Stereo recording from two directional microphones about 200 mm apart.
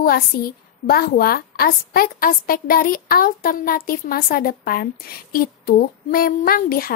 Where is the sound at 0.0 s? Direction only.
50° left (ahead or behind).